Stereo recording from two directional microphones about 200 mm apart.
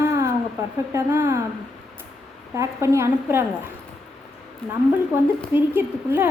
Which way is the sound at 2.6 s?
15° right (ahead or behind).